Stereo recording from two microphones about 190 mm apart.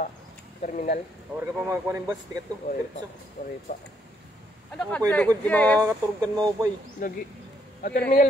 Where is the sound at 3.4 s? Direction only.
40° left (ahead or behind).